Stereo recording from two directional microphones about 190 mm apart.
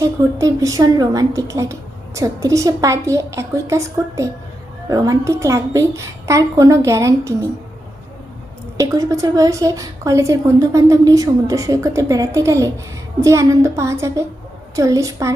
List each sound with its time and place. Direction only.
0.0 s a woman's voice: 15° right (ahead or behind)
8.8 s a woman's voice: 15° right (ahead or behind)